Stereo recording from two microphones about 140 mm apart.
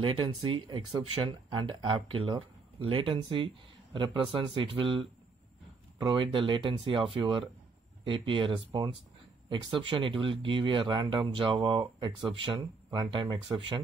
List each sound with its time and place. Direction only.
0.0 s speech: 40° right (ahead or behind)